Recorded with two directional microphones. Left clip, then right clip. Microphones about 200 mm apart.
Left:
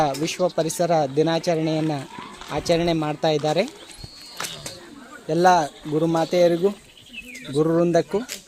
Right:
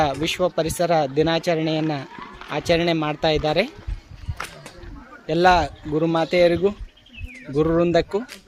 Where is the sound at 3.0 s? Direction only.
10° right (ahead or behind).